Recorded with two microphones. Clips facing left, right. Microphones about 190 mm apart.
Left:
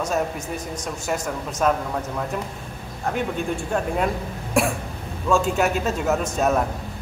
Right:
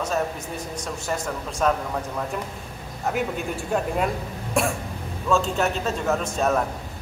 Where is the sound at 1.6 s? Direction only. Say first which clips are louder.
Left 1 dB; 5° left (ahead or behind).